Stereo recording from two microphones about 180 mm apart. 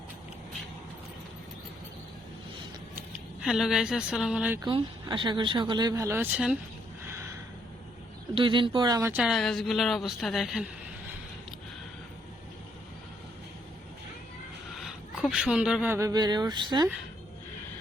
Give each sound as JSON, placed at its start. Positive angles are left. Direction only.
{"t": 3.4, "sound": "a woman's voice", "side_deg": 0}
{"t": 4.6, "sound": "speech", "side_deg": -25}
{"t": 8.4, "sound": "speech", "side_deg": -25}
{"t": 9.2, "sound": "a woman's voice", "side_deg": 0}
{"t": 14.8, "sound": "a sound", "side_deg": 0}
{"t": 16.0, "sound": "speech", "side_deg": -20}